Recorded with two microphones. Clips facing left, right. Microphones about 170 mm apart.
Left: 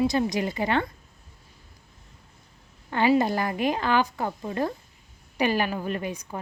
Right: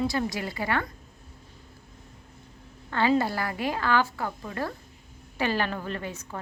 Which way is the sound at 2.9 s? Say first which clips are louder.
Left 3 dB; 15° left (ahead or behind).